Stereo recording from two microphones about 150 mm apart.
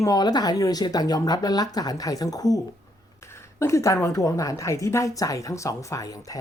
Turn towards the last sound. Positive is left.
turn(degrees=20)  # may be behind; listen again after turning